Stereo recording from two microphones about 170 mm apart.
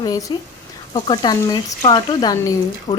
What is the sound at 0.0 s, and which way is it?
A woman's voice, 20° left (ahead or behind).